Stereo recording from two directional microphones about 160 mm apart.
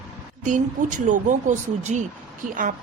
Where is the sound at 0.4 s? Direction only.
50° right (ahead or behind).